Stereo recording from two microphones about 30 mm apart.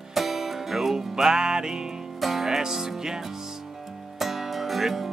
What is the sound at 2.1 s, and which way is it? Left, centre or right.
Music, centre.